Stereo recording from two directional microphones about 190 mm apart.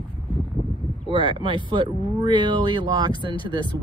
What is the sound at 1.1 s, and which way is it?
Speech, 25° right (ahead or behind).